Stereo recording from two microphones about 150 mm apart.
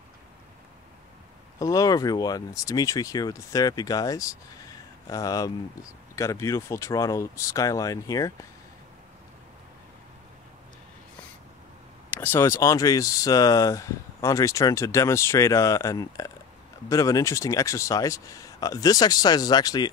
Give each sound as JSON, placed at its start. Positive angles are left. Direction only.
{"t": 1.6, "sound": "speech", "side_deg": 25}
{"t": 12.1, "sound": "speech", "side_deg": 15}